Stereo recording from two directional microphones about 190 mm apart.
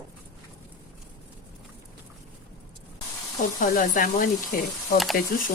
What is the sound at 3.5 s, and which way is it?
Speech, 50° left (ahead or behind).